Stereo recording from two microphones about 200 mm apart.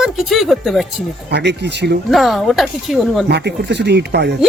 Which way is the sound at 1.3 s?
60° right (ahead or behind).